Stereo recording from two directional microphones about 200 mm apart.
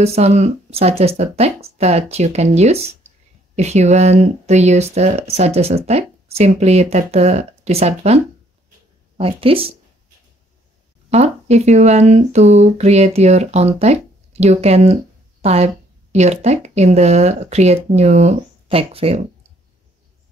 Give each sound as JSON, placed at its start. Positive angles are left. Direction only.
{"t": 0.0, "sound": "speech", "side_deg": -30}
{"t": 9.2, "sound": "speech", "side_deg": -30}
{"t": 11.1, "sound": "speech", "side_deg": -30}